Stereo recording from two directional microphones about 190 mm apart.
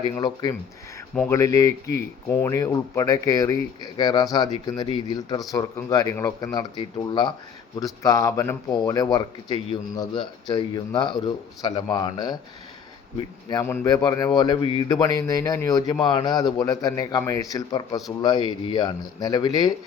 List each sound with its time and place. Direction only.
0.0 s speech: 25° left (ahead or behind)